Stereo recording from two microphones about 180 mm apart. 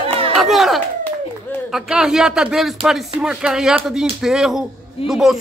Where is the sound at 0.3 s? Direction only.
Centre (ahead or behind).